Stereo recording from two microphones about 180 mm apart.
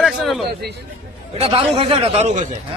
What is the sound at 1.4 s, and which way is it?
Speech, 30° right (ahead or behind).